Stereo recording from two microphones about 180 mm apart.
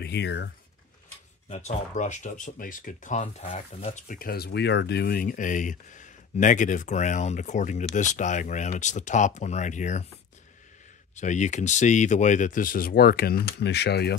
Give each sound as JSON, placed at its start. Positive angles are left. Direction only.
{"t": 0.0, "sound": "speech", "side_deg": 70}
{"t": 1.5, "sound": "speech", "side_deg": 40}
{"t": 11.1, "sound": "speech", "side_deg": 40}